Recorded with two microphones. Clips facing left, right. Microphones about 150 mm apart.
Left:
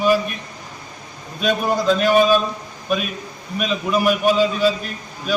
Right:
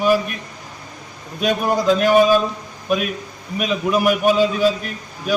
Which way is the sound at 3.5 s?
15° right (ahead or behind).